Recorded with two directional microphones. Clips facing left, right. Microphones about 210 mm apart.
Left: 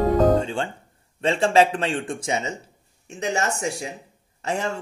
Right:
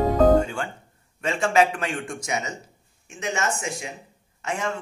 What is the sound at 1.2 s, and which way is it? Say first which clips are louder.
A man's voice: left 3 dB; 30° left (ahead or behind).